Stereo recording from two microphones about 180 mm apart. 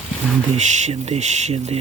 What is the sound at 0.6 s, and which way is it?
Speech, 40° right (ahead or behind).